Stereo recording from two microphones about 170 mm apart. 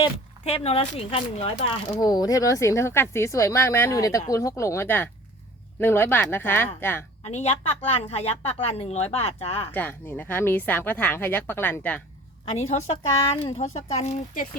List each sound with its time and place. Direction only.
0.0 s speech: 35° left (ahead or behind); by 7.0 s 10° left (ahead or behind)
7.2 s a woman's voice: 40° left (ahead or behind)
9.7 s speech: 10° left (ahead or behind)
12.5 s a woman's voice: 45° left (ahead or behind)